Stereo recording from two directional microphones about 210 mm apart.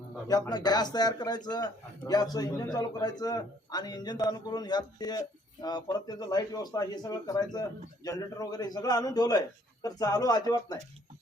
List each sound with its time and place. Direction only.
0.3 s a man's voice: 15° left (ahead or behind)